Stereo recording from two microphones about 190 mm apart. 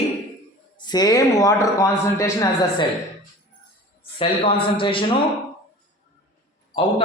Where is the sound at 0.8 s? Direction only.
20° left (ahead or behind).